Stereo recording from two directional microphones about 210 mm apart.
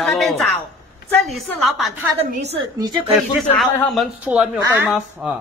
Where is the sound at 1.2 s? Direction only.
Centre (ahead or behind).